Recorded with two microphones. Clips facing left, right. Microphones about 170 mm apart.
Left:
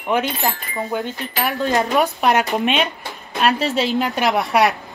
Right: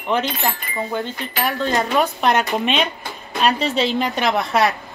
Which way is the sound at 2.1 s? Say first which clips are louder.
Left 1 dB; 5° left (ahead or behind).